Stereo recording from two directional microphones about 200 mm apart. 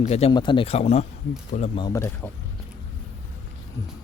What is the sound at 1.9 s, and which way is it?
Speech, 10° left (ahead or behind).